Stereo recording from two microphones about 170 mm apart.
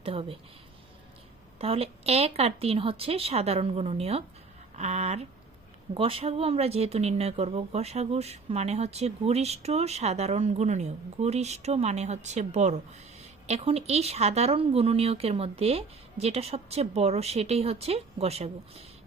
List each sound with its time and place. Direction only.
0.0 s speech: 35° right (ahead or behind)
1.5 s speech: 35° right (ahead or behind)